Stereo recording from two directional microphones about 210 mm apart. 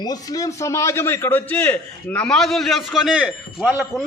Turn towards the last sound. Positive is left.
turn(degrees=0)  # may be behind; listen again after turning